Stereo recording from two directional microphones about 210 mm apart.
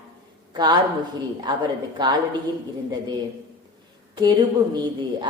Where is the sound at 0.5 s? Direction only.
20° right (ahead or behind).